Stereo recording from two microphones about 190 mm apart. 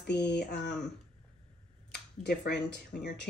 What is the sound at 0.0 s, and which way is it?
Speech, 65° left (ahead or behind).